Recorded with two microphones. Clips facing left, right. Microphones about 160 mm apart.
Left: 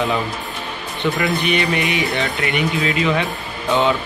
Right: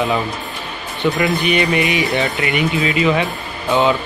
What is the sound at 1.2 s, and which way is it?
Speech, 5° right (ahead or behind).